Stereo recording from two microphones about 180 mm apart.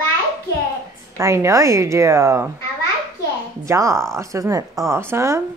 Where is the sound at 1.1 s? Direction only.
15° right (ahead or behind).